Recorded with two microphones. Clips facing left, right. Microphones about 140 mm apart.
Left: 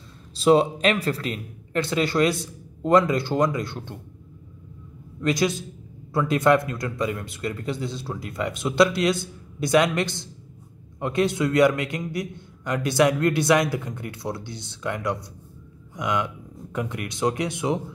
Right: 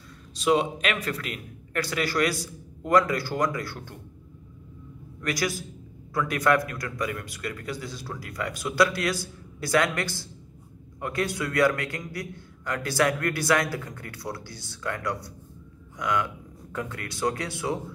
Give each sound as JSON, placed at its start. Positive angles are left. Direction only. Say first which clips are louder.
{"t": 0.4, "sound": "a man's voice", "louder": "left 5 dB", "side_deg": 30}
{"t": 5.2, "sound": "a man's voice", "louder": "left 6 dB", "side_deg": 25}